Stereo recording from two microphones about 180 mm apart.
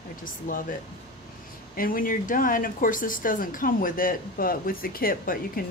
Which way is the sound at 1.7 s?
50° left (ahead or behind).